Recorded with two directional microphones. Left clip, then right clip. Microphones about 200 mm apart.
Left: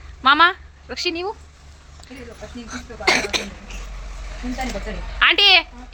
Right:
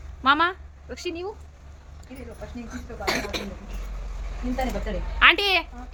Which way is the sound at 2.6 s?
30° left (ahead or behind).